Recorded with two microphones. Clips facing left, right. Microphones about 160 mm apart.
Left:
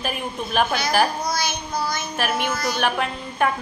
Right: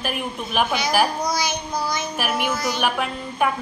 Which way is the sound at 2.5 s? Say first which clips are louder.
Even; 20° right (ahead or behind).